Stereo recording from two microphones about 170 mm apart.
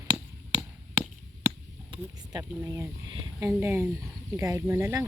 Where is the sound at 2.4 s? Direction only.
15° right (ahead or behind).